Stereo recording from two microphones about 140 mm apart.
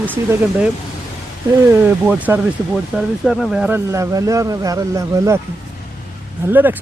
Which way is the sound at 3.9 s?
25° right (ahead or behind).